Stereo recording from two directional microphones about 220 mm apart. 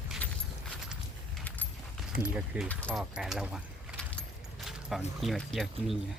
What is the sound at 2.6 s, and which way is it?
Speech, 5° left (ahead or behind).